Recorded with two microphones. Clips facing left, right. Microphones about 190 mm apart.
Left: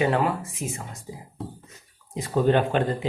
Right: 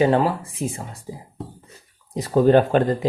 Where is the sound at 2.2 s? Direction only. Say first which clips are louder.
Right 6 dB; 40° right (ahead or behind).